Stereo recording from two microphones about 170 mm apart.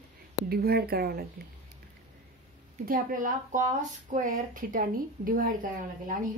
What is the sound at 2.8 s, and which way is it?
A woman's voice, 55° right (ahead or behind).